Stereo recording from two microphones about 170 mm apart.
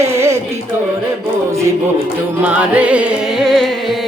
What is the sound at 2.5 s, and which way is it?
Speech, 5° right (ahead or behind).